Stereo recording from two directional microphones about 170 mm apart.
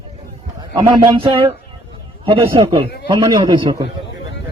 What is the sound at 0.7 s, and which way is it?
A man's voice, 25° right (ahead or behind).